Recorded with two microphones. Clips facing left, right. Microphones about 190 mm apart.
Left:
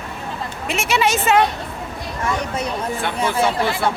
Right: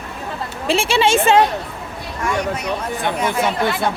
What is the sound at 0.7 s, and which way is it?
Speech, 30° right (ahead or behind).